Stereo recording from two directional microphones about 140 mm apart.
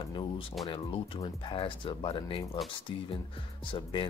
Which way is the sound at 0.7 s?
40° left (ahead or behind).